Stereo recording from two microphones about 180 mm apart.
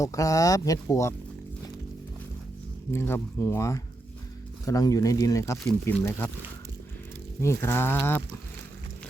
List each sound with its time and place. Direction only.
0.0 s speech: 20° left (ahead or behind)
2.9 s speech: 15° left (ahead or behind)
7.4 s speech: 15° left (ahead or behind)